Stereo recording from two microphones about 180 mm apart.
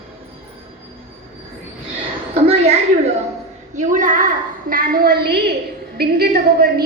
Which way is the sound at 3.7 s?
45° right (ahead or behind).